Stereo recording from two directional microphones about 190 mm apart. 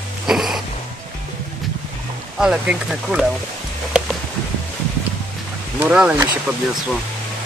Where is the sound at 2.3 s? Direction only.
5° right (ahead or behind).